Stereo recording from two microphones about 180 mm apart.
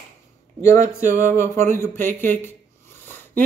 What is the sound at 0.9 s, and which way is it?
A man's voice, 15° left (ahead or behind).